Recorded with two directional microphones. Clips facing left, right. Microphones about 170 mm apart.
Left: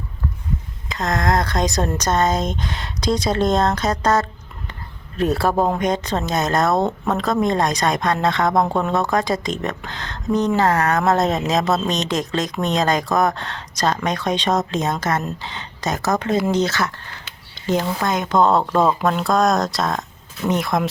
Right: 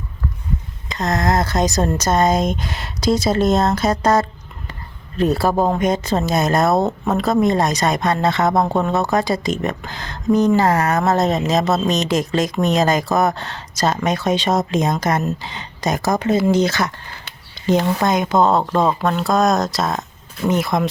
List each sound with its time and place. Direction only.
0.9 s speech: centre (ahead or behind)
5.1 s speech: centre (ahead or behind); by 18.3 s 15° right (ahead or behind)
18.3 s speech: centre (ahead or behind)